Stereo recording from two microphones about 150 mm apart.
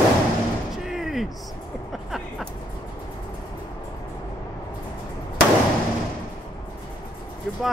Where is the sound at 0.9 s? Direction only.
Centre (ahead or behind).